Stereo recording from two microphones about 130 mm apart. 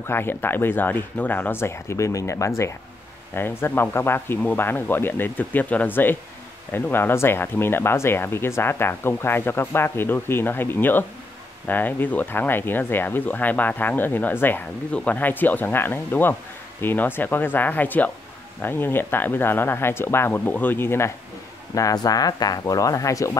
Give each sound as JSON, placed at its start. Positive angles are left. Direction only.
{"t": 0.0, "sound": "speech", "side_deg": 15}